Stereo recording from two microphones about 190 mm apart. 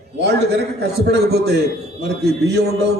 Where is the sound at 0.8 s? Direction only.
60° right (ahead or behind).